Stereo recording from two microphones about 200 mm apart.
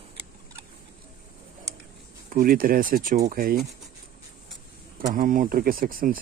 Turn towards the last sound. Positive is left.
turn(degrees=-45)  # may be behind; listen again after turning